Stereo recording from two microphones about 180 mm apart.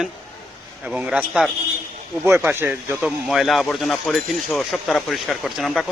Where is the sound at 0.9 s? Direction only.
5° right (ahead or behind).